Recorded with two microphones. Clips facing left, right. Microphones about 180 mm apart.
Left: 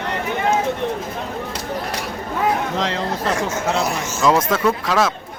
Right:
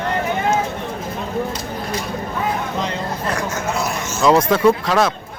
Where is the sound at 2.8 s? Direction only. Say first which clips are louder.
Left 2 dB; 90° left.